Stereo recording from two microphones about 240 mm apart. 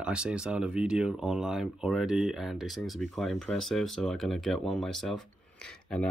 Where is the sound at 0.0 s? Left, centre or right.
Centre.